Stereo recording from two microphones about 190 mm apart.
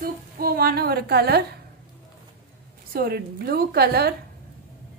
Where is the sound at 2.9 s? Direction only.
55° right (ahead or behind).